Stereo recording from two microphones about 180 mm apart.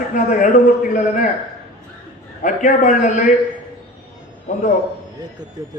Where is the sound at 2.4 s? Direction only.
45° left (ahead or behind).